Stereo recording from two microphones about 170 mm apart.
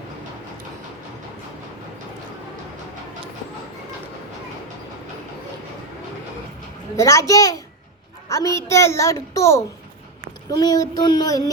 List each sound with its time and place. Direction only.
6.9 s child singing: 20° left (ahead or behind)
8.3 s a woman's voice: 20° left (ahead or behind)
10.5 s child singing: 25° left (ahead or behind)